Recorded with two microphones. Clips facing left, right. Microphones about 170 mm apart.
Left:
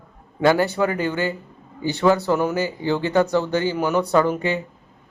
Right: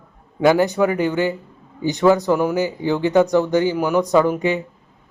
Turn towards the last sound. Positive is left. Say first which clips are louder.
# right 3 dB
turn(degrees=-15)  # may be behind; listen again after turning